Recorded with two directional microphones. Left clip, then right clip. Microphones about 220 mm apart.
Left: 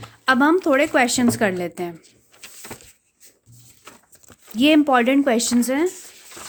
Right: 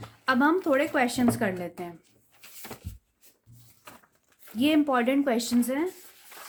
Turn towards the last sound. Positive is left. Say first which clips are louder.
# left 7 dB
turn(degrees=45)  # may be behind; listen again after turning